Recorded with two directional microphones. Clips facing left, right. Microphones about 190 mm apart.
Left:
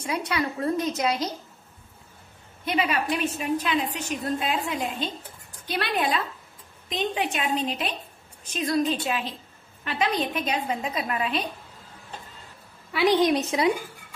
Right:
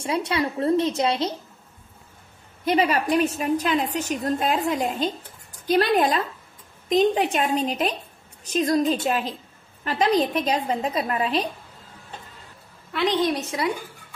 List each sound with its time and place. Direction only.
0.0 s a woman's voice: 25° right (ahead or behind)
2.6 s a woman's voice: 40° right (ahead or behind)
12.9 s a woman's voice: 10° left (ahead or behind)